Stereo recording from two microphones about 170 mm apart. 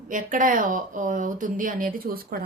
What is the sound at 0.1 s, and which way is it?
Speech, 50° right (ahead or behind).